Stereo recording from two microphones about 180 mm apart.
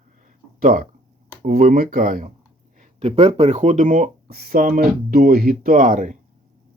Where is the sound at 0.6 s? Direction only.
50° right (ahead or behind).